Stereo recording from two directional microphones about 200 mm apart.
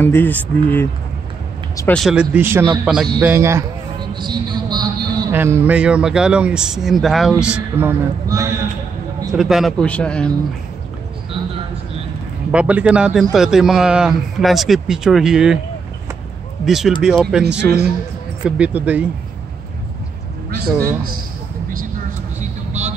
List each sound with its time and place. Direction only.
0.0 s a man's voice: 10° left (ahead or behind); by 5.3 s 20° right (ahead or behind)
5.3 s speech: 10° right (ahead or behind)
9.3 s speech: centre (ahead or behind)
11.3 s a sound: 25° right (ahead or behind)
12.4 s speech: 5° right (ahead or behind)
16.6 s speech: centre (ahead or behind)
17.6 s a man's voice: 50° right (ahead or behind)
18.6 s speech: 10° right (ahead or behind)
22.4 s vehicle: 35° right (ahead or behind)